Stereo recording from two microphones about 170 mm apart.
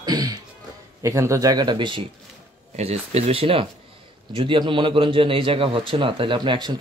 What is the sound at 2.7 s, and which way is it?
A man's voice, 40° right (ahead or behind).